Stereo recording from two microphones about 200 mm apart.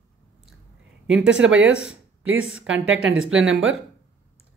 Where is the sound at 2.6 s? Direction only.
75° right (ahead or behind).